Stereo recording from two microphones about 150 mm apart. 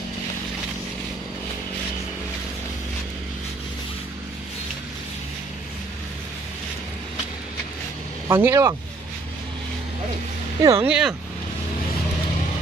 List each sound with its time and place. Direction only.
8.3 s speech: 20° right (ahead or behind)
10.6 s speech: 20° right (ahead or behind)
10.9 s speech: 5° right (ahead or behind)